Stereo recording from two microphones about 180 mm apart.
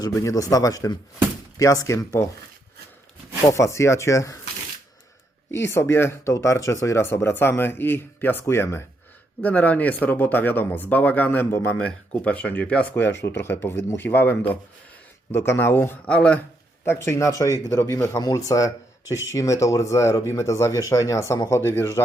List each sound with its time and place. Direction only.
0.0 s speech: 20° left (ahead or behind)
3.4 s speech: 15° left (ahead or behind)
5.5 s speech: 15° left (ahead or behind)